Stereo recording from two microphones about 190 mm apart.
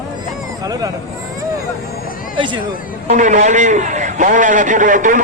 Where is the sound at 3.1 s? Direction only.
40° right (ahead or behind).